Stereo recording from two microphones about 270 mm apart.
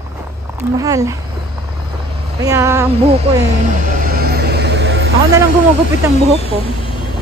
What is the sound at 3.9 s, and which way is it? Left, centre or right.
Vehicle, right.